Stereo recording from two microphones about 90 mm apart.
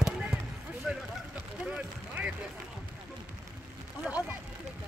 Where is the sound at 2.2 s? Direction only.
15° right (ahead or behind).